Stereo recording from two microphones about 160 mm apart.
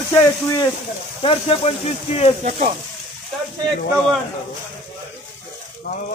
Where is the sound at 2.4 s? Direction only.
50° right (ahead or behind).